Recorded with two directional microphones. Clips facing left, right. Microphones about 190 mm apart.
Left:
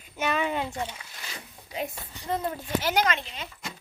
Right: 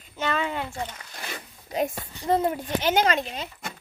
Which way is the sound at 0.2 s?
15° left (ahead or behind).